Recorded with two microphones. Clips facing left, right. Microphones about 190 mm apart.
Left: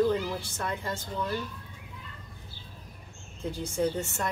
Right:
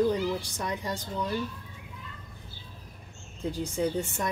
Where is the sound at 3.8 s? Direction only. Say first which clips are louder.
Left 1 dB; 15° right (ahead or behind).